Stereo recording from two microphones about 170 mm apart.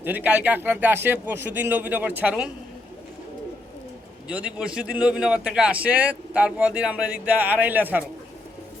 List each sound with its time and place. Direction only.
0.0 s a man's voice: 10° right (ahead or behind)
4.3 s a man's voice: 5° right (ahead or behind)